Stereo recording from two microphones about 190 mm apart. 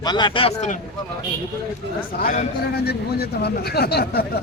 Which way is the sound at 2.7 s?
55° left (ahead or behind).